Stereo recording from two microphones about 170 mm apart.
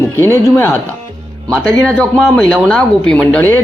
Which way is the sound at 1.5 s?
5° left (ahead or behind).